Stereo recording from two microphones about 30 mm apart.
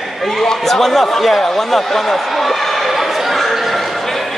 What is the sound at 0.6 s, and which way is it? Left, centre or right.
A man's voice, centre.